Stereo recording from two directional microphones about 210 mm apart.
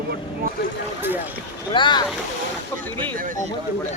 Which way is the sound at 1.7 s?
20° left (ahead or behind).